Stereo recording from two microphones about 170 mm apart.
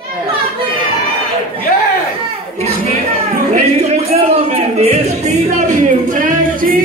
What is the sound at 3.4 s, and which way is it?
Music, 40° right (ahead or behind).